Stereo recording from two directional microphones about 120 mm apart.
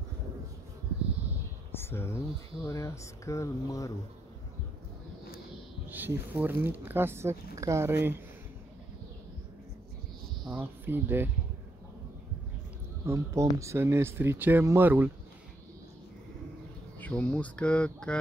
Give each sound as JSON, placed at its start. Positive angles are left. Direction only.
{"t": 1.8, "sound": "speech", "side_deg": 20}
{"t": 5.9, "sound": "speech", "side_deg": -15}
{"t": 10.5, "sound": "speech", "side_deg": -20}
{"t": 13.0, "sound": "speech", "side_deg": -25}
{"t": 17.0, "sound": "speech", "side_deg": 10}